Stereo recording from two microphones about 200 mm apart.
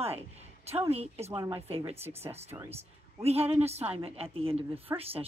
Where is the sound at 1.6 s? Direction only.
30° right (ahead or behind).